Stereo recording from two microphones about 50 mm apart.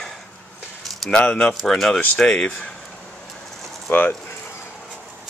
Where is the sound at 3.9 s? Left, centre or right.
Left.